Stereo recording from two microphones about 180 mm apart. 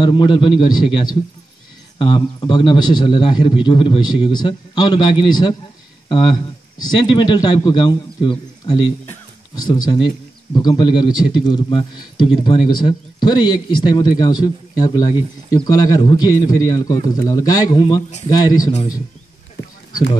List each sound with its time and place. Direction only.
0.0 s a man's voice: 25° left (ahead or behind)